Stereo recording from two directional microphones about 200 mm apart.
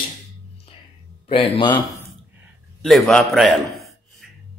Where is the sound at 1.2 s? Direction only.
25° left (ahead or behind).